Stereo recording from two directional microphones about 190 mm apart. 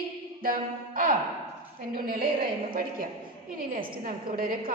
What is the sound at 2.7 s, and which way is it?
A woman's voice, 50° right (ahead or behind).